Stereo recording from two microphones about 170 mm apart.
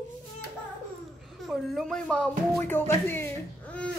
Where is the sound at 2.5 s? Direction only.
15° left (ahead or behind).